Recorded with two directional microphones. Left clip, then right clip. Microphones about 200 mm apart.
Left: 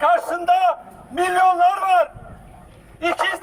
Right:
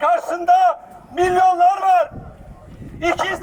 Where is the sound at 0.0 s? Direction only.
5° left (ahead or behind).